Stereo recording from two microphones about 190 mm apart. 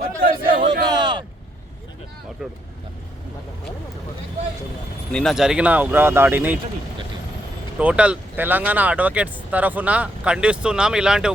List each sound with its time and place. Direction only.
0.5 s a sound: 25° right (ahead or behind)
2.4 s speech: centre (ahead or behind)
5.1 s speech: centre (ahead or behind)
7.8 s speech: 5° right (ahead or behind)